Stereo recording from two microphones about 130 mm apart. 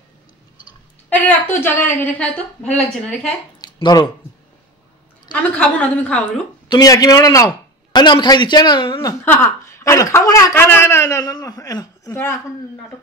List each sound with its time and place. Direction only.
1.6 s a woman's voice: 15° left (ahead or behind)
3.6 s a sound: 35° left (ahead or behind)
5.3 s a woman's voice: 10° left (ahead or behind)
6.7 s a man's voice: 30° left (ahead or behind)
9.2 s speech: 15° left (ahead or behind)